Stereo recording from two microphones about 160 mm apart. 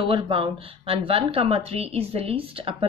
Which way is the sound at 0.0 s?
35° right (ahead or behind).